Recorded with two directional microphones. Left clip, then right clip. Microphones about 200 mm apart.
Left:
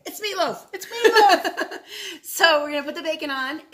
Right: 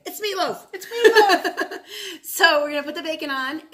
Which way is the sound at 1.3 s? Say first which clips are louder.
Even; 25° right (ahead or behind).